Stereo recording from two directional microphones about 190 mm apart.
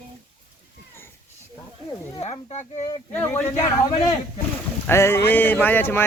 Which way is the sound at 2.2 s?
35° left (ahead or behind).